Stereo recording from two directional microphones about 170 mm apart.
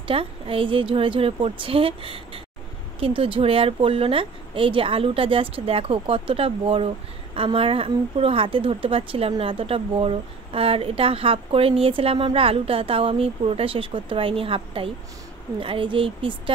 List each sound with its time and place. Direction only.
0.1 s a woman's voice: 30° right (ahead or behind)